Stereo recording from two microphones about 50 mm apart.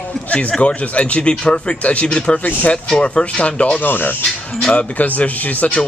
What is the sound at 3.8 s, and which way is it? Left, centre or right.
Speech, left.